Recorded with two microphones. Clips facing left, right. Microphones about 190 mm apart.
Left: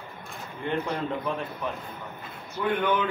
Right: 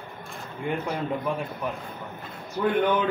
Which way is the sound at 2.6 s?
50° right (ahead or behind).